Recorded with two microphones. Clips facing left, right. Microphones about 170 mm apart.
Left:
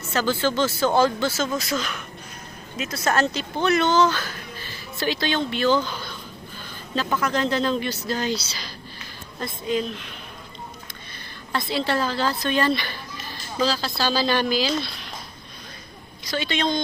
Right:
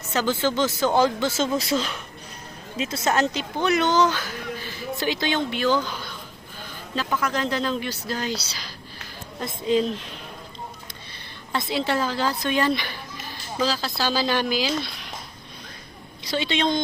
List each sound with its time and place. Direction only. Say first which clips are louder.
0.1 s a child's voice: even; 15° right (ahead or behind)
1.5 s a woman's voice: right 2 dB; 30° right (ahead or behind); by 5.8 s 10° right (ahead or behind)
7.2 s a child's voice: left 3 dB; 10° right (ahead or behind)
9.4 s a woman's voice: right 3 dB; 30° right (ahead or behind)
11.5 s a child's voice: even; 15° right (ahead or behind)
16.3 s a woman's voice: right 1 dB; 25° right (ahead or behind)